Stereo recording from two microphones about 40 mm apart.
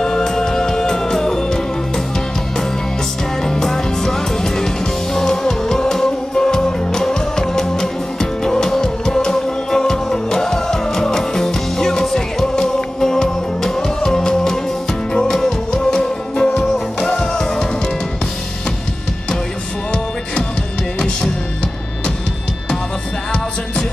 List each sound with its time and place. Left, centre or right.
0.0 s music: centre
3.4 s music: centre